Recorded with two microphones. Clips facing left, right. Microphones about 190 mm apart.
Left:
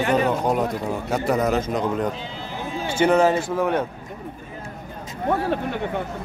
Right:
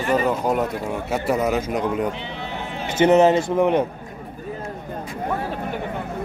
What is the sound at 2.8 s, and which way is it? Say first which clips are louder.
Speech: right 3 dB; 20° right (ahead or behind).